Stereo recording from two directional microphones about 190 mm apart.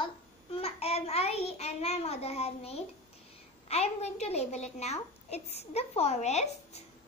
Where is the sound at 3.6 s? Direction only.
35° left (ahead or behind).